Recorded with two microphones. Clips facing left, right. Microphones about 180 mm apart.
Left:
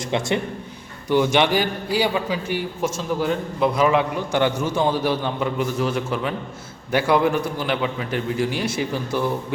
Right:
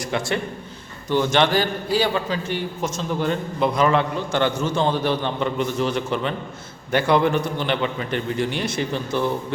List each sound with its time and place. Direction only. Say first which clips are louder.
0.0 s a man's voice: left 2 dB; 20° left (ahead or behind)